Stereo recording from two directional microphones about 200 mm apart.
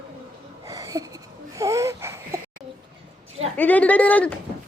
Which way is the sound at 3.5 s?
10° left (ahead or behind).